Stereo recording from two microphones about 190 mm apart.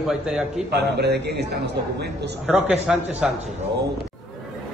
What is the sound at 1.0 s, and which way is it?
Speech, 60° right (ahead or behind).